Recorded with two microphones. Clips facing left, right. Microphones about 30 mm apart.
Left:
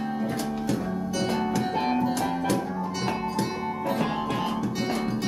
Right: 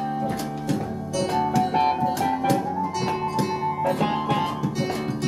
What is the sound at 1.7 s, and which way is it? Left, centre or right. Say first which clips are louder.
Music: right 4 dB; centre.